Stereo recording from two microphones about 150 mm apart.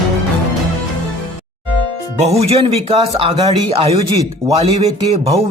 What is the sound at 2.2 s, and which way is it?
Speech, 45° right (ahead or behind).